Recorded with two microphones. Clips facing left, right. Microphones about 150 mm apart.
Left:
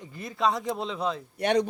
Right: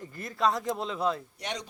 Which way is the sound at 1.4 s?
60° left (ahead or behind).